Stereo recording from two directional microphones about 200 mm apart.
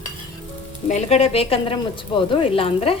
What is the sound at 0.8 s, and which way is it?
A woman's voice, 35° left (ahead or behind).